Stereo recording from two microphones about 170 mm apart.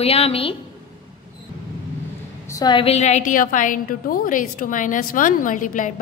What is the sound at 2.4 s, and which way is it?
Speech, 20° left (ahead or behind).